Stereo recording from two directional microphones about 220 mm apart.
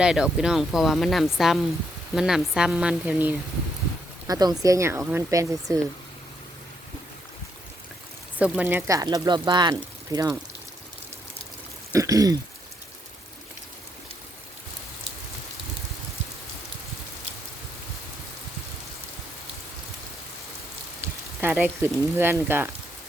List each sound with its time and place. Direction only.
0.0 s speech: 5° right (ahead or behind)
4.3 s speech: 15° right (ahead or behind)
8.4 s speech: 5° right (ahead or behind)
11.9 s speech: 15° right (ahead or behind)
21.4 s speech: 10° right (ahead or behind)